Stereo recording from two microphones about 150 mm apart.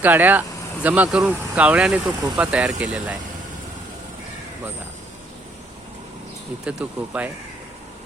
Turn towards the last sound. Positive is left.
turn(degrees=-10)  # may be behind; listen again after turning